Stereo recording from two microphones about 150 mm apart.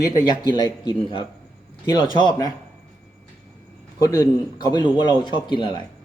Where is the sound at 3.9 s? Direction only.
25° left (ahead or behind).